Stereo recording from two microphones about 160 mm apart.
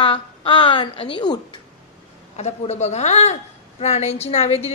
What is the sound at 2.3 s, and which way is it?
A man's voice, 45° left (ahead or behind).